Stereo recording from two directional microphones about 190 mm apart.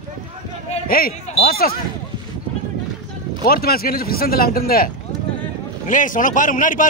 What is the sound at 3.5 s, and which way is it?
Speech, 50° left (ahead or behind).